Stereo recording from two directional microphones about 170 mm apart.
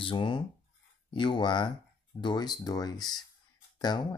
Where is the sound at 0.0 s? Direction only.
30° left (ahead or behind).